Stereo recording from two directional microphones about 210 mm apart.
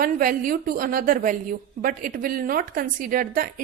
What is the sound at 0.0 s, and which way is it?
A woman's voice, 40° right (ahead or behind).